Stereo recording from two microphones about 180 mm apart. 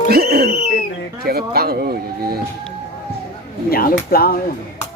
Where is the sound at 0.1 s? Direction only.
60° right (ahead or behind).